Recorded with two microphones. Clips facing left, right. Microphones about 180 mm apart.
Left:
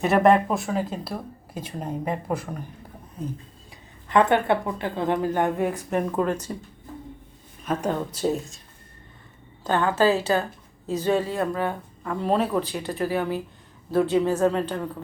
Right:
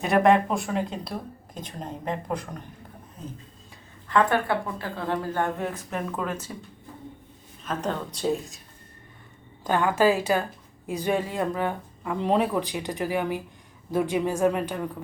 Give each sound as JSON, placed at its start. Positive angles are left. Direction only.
{"t": 0.0, "sound": "speech", "side_deg": 0}
{"t": 4.1, "sound": "speech", "side_deg": 20}
{"t": 7.6, "sound": "speech", "side_deg": 10}
{"t": 9.6, "sound": "speech", "side_deg": -10}